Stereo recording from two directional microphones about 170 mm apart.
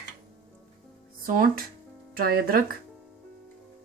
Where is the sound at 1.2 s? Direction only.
55° right (ahead or behind).